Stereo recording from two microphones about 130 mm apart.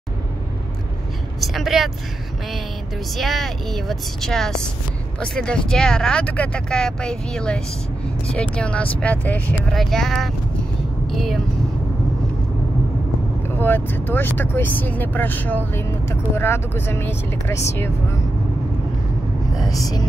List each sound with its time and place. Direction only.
1.4 s speech: centre (ahead or behind)
3.2 s speech: centre (ahead or behind)
13.6 s speech: 15° left (ahead or behind)